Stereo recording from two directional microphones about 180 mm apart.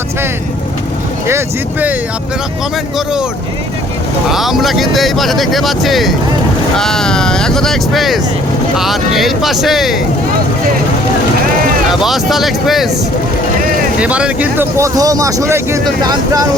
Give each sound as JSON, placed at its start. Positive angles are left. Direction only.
{"t": 1.3, "sound": "speech", "side_deg": -10}
{"t": 4.3, "sound": "speech", "side_deg": 0}
{"t": 11.9, "sound": "speech", "side_deg": 0}
{"t": 14.0, "sound": "speech", "side_deg": -5}